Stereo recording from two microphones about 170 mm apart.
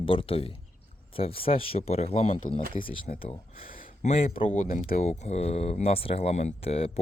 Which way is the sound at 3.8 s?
50° left (ahead or behind).